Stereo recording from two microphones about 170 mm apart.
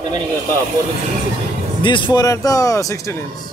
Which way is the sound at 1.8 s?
30° left (ahead or behind).